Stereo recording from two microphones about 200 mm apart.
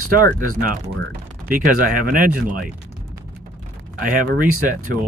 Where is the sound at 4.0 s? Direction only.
45° right (ahead or behind).